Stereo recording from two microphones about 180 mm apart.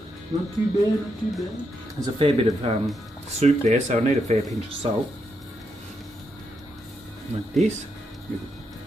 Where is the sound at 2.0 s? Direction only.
30° right (ahead or behind).